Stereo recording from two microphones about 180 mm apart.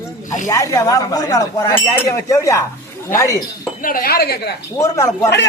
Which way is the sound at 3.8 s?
55° left (ahead or behind).